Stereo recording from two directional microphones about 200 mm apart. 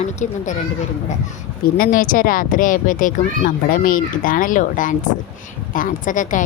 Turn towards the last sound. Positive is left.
turn(degrees=40)  # may be behind; listen again after turning